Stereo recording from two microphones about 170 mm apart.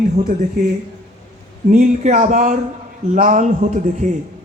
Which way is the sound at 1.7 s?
50° right (ahead or behind).